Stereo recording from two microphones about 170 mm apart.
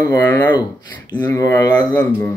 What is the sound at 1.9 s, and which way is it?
Speech, 10° left (ahead or behind).